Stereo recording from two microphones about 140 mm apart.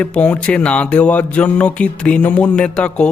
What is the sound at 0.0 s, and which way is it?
Speech, 10° left (ahead or behind).